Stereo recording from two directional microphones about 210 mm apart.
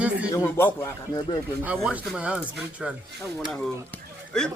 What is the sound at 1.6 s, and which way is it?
Speech, 5° right (ahead or behind).